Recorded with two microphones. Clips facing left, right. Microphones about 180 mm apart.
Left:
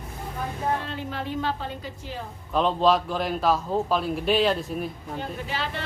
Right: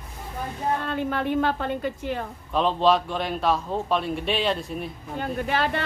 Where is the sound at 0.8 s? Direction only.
55° right (ahead or behind).